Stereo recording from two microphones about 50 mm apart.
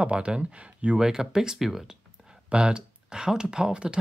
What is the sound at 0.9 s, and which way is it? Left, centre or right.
Speech, centre.